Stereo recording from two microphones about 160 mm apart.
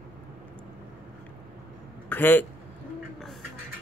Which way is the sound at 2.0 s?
10° left (ahead or behind).